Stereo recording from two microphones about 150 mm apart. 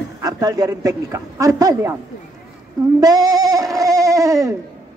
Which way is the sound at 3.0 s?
25° right (ahead or behind).